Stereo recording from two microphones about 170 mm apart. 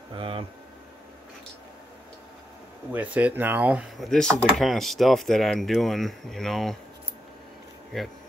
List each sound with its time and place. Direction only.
0.1 s speech: 30° right (ahead or behind)
2.9 s speech: 10° right (ahead or behind)
7.9 s speech: centre (ahead or behind)